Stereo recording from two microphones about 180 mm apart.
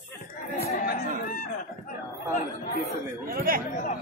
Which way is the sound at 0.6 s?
60° left (ahead or behind).